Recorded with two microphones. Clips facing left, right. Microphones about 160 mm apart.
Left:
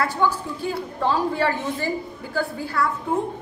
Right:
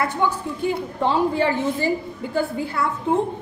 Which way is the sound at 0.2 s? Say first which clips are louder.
Right 1 dB; 15° right (ahead or behind).